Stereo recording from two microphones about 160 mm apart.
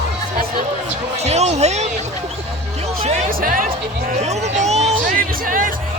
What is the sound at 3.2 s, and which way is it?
Music, 60° right (ahead or behind).